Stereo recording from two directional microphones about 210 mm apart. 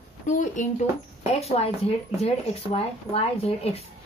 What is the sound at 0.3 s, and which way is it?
A woman's voice, 35° left (ahead or behind).